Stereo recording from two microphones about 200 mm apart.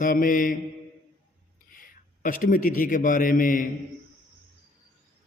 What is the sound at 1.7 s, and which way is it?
A man's voice, 45° left (ahead or behind).